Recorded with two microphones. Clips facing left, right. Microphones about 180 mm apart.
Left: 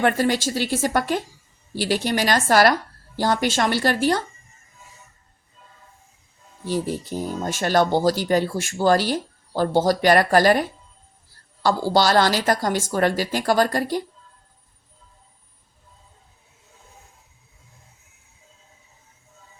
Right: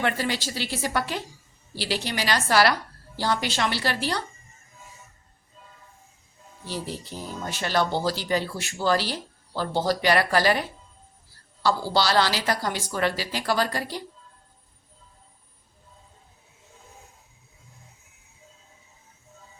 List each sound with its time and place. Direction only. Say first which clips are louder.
0.0 s speech: left 7 dB; 45° left (ahead or behind)
6.7 s speech: left 8 dB; 50° left (ahead or behind)